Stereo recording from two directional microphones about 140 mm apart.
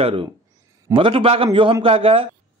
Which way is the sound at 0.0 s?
40° right (ahead or behind).